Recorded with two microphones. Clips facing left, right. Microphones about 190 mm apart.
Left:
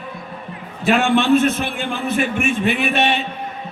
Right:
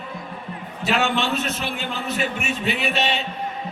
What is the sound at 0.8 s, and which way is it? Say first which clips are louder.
A man's voice: left 6 dB; 50° left (ahead or behind).